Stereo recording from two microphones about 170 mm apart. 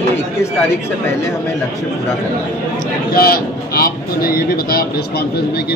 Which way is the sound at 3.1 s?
65° left (ahead or behind).